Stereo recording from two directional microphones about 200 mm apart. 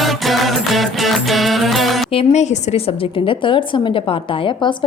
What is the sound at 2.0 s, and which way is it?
A woman's voice, 30° left (ahead or behind).